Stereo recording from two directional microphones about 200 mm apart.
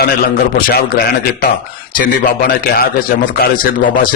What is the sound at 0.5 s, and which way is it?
Speech, 50° left (ahead or behind).